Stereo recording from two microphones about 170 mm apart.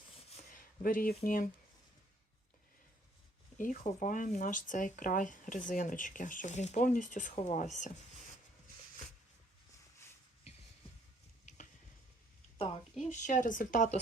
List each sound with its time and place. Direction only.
0.5 s speech: 55° left (ahead or behind)
3.6 s speech: 50° left (ahead or behind)
12.5 s a sound: 35° left (ahead or behind)
13.1 s speech: 45° left (ahead or behind)